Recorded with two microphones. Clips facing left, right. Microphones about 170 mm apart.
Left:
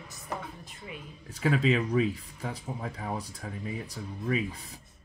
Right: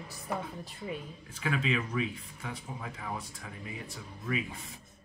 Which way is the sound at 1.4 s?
35° left (ahead or behind).